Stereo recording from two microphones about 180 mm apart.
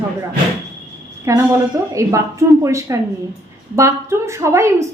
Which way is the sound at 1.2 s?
15° right (ahead or behind).